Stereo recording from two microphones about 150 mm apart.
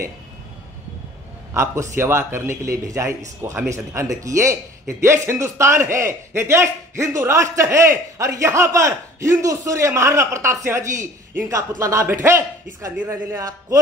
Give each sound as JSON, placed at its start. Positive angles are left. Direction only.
{"t": 1.5, "sound": "a man's voice", "side_deg": -20}